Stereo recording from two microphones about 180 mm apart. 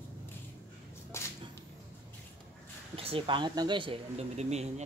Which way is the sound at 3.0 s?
30° right (ahead or behind).